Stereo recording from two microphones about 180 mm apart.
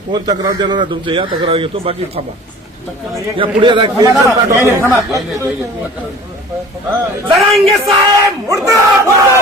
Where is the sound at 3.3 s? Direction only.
30° right (ahead or behind).